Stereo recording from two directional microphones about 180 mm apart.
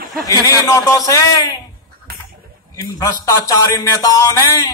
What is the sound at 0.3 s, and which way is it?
Music, 20° left (ahead or behind).